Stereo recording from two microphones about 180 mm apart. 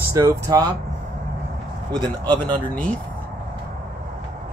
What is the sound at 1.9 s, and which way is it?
Speech, 25° right (ahead or behind).